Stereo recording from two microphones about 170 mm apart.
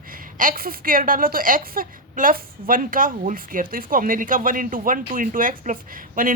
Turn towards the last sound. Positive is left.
turn(degrees=-55)  # may be behind; listen again after turning